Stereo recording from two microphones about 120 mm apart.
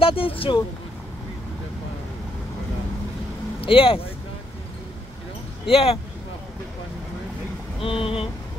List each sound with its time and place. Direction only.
0.0 s speech: 50° left (ahead or behind)
3.6 s speech: 50° left (ahead or behind)
5.7 s speech: 55° left (ahead or behind)
7.8 s speech: 50° left (ahead or behind)